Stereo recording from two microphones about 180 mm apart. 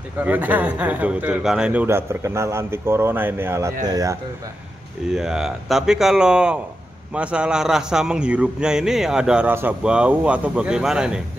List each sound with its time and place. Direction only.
0.2 s speech: 10° right (ahead or behind)
5.0 s a man's voice: 5° right (ahead or behind)